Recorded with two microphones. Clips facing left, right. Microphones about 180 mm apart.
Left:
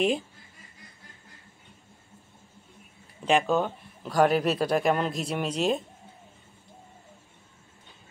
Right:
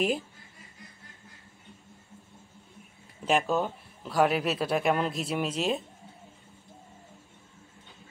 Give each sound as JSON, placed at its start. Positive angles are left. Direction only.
{"t": 3.3, "sound": "a man's voice", "side_deg": -5}